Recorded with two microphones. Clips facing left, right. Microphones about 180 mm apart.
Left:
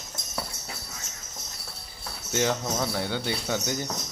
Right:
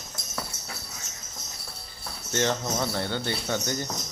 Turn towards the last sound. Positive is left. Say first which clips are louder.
# even
turn(degrees=10)  # may be behind; listen again after turning